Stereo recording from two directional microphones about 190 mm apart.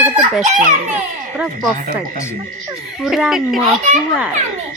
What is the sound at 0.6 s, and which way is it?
Speech, 45° right (ahead or behind).